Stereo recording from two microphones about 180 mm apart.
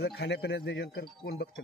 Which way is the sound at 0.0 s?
70° left (ahead or behind).